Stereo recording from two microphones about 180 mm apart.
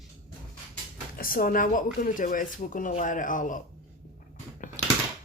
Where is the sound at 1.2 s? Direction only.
50° left (ahead or behind).